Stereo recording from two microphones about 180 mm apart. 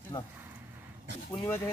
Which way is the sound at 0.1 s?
20° left (ahead or behind).